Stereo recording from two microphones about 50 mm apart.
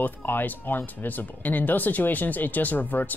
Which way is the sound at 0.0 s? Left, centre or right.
Left.